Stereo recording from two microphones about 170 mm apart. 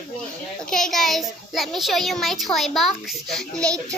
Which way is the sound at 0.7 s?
5° left (ahead or behind).